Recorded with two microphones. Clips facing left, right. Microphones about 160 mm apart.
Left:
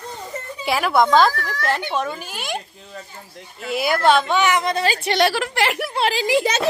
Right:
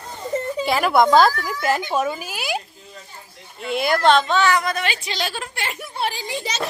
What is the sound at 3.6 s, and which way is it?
A woman's voice, 5° left (ahead or behind).